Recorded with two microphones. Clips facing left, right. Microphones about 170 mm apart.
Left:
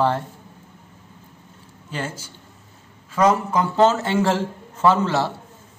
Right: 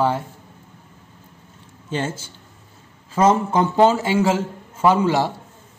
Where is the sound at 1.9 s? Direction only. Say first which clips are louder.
Right 4 dB; 25° right (ahead or behind).